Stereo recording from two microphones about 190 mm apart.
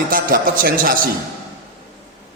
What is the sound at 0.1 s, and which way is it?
Speech, 50° right (ahead or behind).